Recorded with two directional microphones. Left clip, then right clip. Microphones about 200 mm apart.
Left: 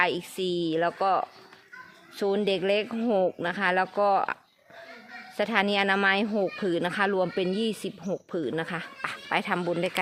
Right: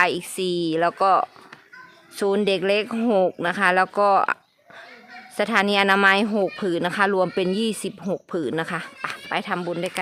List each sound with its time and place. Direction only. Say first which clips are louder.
0.0 s speech: right 5 dB; 25° right (ahead or behind)
5.4 s speech: right 5 dB; 25° right (ahead or behind)